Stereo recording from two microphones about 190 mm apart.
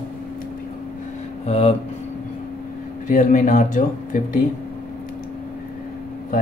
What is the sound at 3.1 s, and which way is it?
Speech, 40° left (ahead or behind).